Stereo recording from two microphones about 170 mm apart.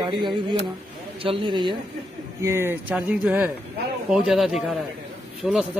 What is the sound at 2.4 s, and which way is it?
Speech, 15° right (ahead or behind).